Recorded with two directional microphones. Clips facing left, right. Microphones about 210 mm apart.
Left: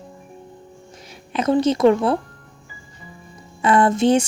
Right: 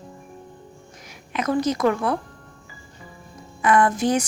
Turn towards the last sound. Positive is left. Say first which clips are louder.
# left 4 dB
turn(degrees=25)  # may be behind; listen again after turning